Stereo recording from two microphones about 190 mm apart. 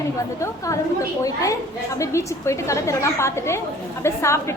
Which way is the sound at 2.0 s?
15° left (ahead or behind).